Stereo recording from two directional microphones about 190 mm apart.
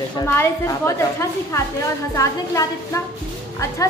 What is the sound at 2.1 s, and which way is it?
Speech, 15° left (ahead or behind).